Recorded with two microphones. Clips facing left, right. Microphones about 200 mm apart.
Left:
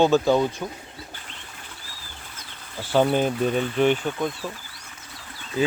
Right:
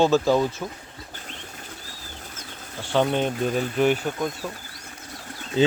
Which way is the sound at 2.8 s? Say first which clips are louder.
Left 2 dB; 5° left (ahead or behind).